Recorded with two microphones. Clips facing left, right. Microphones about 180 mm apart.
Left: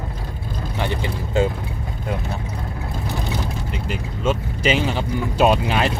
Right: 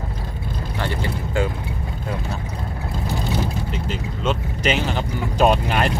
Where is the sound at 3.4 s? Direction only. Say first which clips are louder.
Right 2 dB; 10° left (ahead or behind).